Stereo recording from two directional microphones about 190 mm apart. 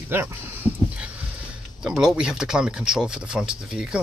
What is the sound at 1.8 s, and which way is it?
Speech, 5° right (ahead or behind).